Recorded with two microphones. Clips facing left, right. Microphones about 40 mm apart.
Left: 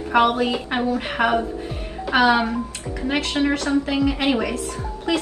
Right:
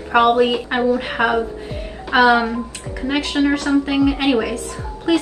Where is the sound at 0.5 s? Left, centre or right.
Centre.